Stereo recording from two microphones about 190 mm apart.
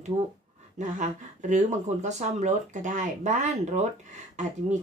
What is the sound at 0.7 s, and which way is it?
Speech, 40° right (ahead or behind).